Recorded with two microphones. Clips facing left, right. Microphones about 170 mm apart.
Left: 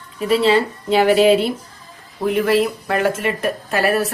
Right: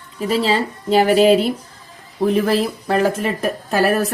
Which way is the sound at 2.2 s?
30° right (ahead or behind).